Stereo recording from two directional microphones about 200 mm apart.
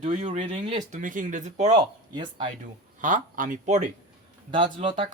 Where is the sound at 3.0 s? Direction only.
40° right (ahead or behind).